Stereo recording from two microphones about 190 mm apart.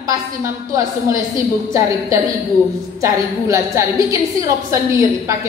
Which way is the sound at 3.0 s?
15° right (ahead or behind).